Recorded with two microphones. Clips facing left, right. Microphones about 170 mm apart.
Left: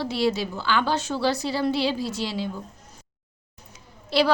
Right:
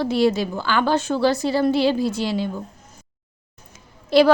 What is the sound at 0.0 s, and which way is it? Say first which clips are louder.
A woman's voice: right 5 dB; 50° right (ahead or behind).